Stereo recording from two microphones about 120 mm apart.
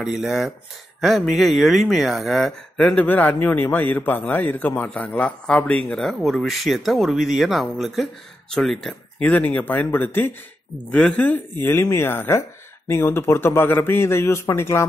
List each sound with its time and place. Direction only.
0.0 s speech: 5° right (ahead or behind); by 14.9 s 20° left (ahead or behind)